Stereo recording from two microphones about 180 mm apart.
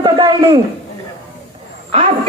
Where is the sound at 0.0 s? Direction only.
25° right (ahead or behind).